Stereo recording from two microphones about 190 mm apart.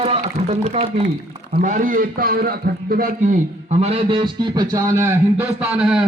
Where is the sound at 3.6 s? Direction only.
30° right (ahead or behind); by 6.0 s 5° right (ahead or behind).